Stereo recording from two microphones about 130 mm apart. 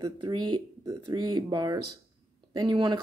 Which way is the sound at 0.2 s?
35° right (ahead or behind).